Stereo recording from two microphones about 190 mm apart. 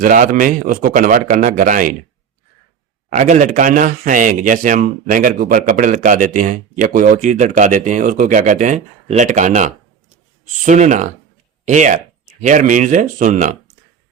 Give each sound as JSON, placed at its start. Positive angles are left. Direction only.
{"t": 0.0, "sound": "a man's voice", "side_deg": -45}
{"t": 3.1, "sound": "a man's voice", "side_deg": -40}